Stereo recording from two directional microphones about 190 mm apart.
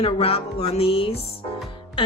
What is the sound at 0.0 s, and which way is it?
Speech, 30° left (ahead or behind).